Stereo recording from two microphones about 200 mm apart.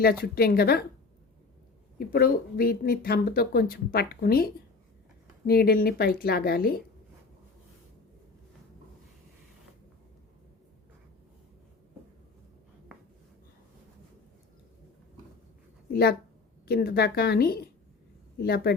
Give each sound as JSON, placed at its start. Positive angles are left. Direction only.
{"t": 0.0, "sound": "speech", "side_deg": 50}
{"t": 2.0, "sound": "speech", "side_deg": 45}
{"t": 15.9, "sound": "a woman's voice", "side_deg": 50}